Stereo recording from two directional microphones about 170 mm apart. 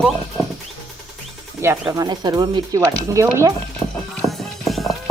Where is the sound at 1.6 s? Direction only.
15° right (ahead or behind).